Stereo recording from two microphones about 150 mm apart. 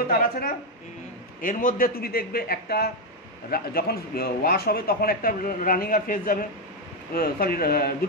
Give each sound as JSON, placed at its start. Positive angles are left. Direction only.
{"t": 0.1, "sound": "a man's voice", "side_deg": 70}
{"t": 7.2, "sound": "speech", "side_deg": 80}